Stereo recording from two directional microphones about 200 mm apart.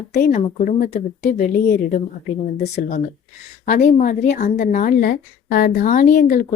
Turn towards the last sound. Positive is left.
turn(degrees=40)  # may be behind; listen again after turning